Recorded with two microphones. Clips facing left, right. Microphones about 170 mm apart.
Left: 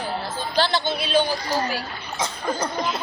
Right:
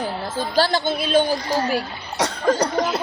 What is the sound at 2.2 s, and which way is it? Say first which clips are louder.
Cough: right 7 dB; 75° right (ahead or behind).